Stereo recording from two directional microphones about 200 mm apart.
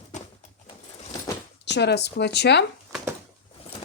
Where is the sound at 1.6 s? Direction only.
60° left (ahead or behind).